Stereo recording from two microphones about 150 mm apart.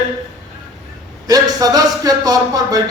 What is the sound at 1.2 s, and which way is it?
A man's voice, 25° right (ahead or behind).